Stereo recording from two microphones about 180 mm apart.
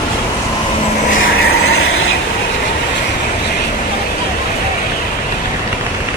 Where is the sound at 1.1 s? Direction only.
55° left (ahead or behind).